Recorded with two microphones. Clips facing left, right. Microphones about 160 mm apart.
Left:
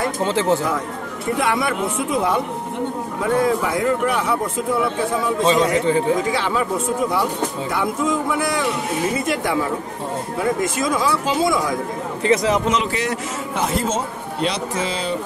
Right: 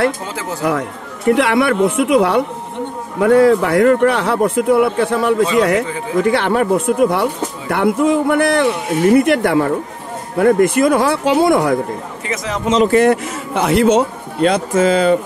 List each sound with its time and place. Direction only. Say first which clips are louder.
0.2 s speech: left 7 dB; 25° left (ahead or behind)
0.7 s a man's voice: right 5 dB; 70° right (ahead or behind)
5.9 s speech: left 7 dB; 30° left (ahead or behind)
6.1 s speech: right 6 dB; 60° right (ahead or behind)
12.8 s speech: right 12 dB; 55° right (ahead or behind); by 14.0 s 70° right (ahead or behind)
14.4 s speech: right 10 dB; 50° right (ahead or behind)